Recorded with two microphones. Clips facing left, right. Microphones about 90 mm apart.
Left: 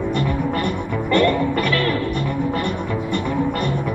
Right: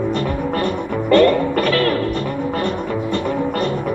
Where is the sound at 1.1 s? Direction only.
55° right (ahead or behind).